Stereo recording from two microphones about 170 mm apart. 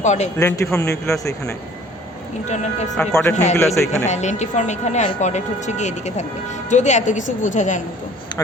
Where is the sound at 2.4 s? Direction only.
45° left (ahead or behind).